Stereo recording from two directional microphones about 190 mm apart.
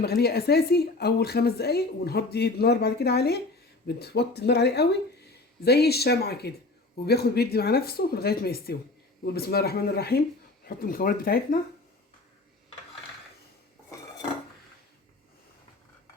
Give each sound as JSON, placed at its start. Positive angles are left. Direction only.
{"t": 0.0, "sound": "a woman's voice", "side_deg": 55}